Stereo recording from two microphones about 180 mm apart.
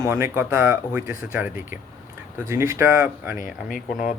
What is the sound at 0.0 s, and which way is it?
A man's voice, 15° right (ahead or behind).